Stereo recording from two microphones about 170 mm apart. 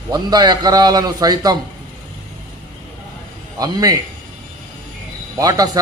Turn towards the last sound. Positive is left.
turn(degrees=-20)  # may be behind; listen again after turning